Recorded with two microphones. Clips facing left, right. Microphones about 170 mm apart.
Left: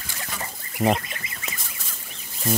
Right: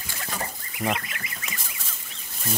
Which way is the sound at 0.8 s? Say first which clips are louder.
Left 6 dB; 20° left (ahead or behind).